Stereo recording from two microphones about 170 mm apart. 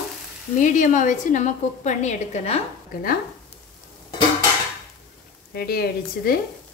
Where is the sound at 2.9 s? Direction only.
55° left (ahead or behind).